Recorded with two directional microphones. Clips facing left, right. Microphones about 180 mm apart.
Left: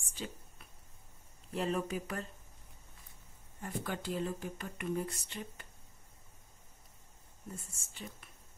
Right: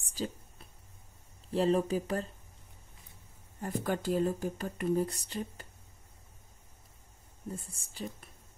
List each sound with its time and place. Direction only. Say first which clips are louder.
0.0 s a sound: right 7 dB; 35° right (ahead or behind)
1.5 s speech: right 7 dB; 30° right (ahead or behind)
3.6 s speech: right 6 dB; 45° right (ahead or behind)
7.5 s speech: right 6 dB; 35° right (ahead or behind)